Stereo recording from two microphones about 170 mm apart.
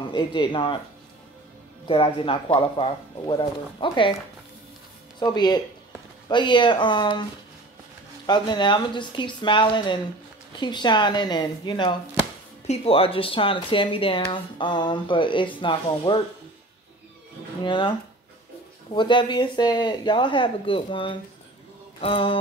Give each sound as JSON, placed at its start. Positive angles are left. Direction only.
{"t": 0.1, "sound": "speech", "side_deg": 25}
{"t": 1.9, "sound": "speech", "side_deg": 30}
{"t": 5.2, "sound": "speech", "side_deg": 25}
{"t": 8.3, "sound": "speech", "side_deg": 25}
{"t": 17.6, "sound": "speech", "side_deg": 30}